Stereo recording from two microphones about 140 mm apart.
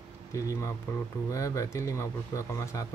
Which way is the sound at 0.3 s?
20° left (ahead or behind).